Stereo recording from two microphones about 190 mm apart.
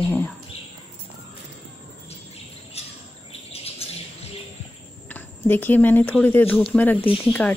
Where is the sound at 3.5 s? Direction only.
30° left (ahead or behind).